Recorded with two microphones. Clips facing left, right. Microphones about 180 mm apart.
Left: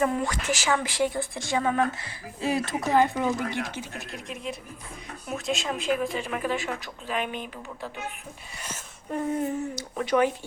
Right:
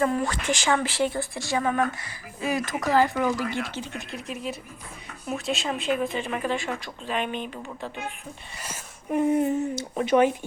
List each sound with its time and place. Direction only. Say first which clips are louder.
0.0 s speech: right 1 dB; 20° left (ahead or behind)
0.4 s speech: right 3 dB; 5° left (ahead or behind)
4.1 s speech: right 2 dB; centre (ahead or behind)
8.6 s speech: right 3 dB; 10° right (ahead or behind)